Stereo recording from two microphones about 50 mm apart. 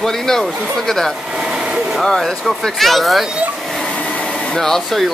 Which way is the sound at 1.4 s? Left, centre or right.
Centre.